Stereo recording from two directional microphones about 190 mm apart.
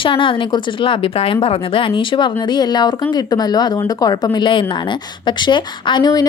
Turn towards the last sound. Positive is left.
turn(degrees=20)  # may be behind; listen again after turning